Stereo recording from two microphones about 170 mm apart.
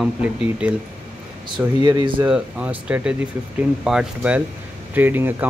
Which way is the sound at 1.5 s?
25° right (ahead or behind).